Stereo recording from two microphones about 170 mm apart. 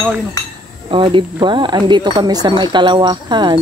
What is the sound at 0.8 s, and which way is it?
Speech, 30° right (ahead or behind).